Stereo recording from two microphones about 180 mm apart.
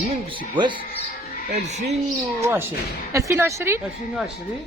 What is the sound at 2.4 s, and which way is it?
Speech, 15° right (ahead or behind).